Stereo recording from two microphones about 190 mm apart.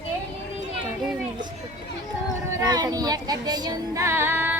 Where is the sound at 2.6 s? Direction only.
20° right (ahead or behind).